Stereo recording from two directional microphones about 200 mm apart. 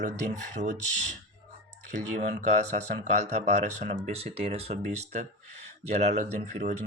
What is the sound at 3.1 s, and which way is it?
Speech, 35° right (ahead or behind).